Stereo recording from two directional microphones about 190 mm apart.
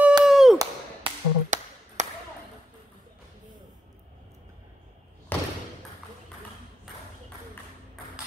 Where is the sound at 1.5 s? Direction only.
40° right (ahead or behind).